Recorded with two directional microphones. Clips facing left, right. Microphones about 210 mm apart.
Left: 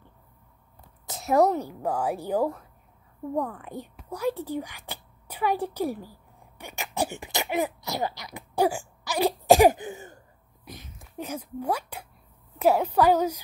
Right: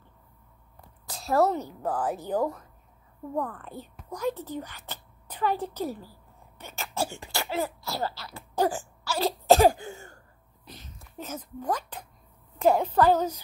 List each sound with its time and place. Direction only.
1.0 s a sound: 20° left (ahead or behind)
1.5 s a woman's voice: 10° left (ahead or behind)
6.6 s throat clearing: 15° left (ahead or behind)
12.5 s a woman's voice: 10° left (ahead or behind)